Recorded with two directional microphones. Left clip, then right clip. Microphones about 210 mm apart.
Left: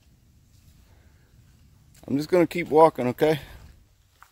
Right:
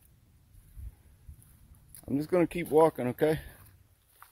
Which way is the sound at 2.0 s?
20° left (ahead or behind).